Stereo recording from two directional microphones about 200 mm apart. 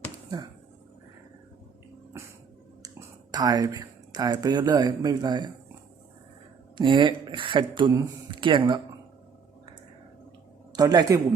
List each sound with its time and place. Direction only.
3.3 s speech: 20° right (ahead or behind)
6.7 s speech: 25° right (ahead or behind)
10.7 s speech: 20° right (ahead or behind)